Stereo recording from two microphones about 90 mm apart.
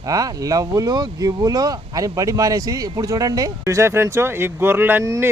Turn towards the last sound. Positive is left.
turn(degrees=-25)  # may be behind; listen again after turning